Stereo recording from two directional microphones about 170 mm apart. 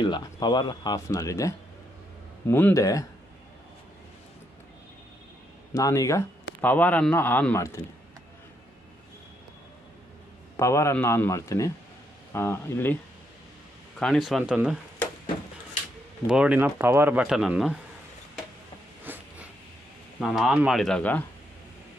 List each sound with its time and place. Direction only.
0.0 s a man's voice: 25° left (ahead or behind)
5.8 s a man's voice: 20° left (ahead or behind)
10.6 s a man's voice: 15° left (ahead or behind)
13.9 s speech: centre (ahead or behind)
16.3 s speech: 5° right (ahead or behind)
19.1 s a sound: 10° right (ahead or behind)
20.2 s speech: centre (ahead or behind)